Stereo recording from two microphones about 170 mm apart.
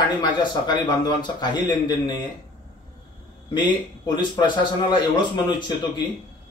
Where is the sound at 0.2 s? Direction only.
25° left (ahead or behind).